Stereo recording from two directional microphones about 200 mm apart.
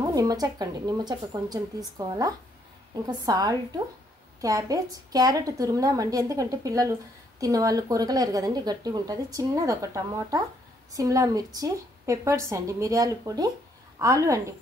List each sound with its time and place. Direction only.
0.0 s a woman's voice: 20° right (ahead or behind)